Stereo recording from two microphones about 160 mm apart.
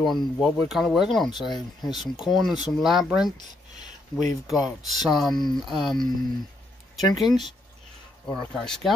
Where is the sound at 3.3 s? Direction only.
25° left (ahead or behind).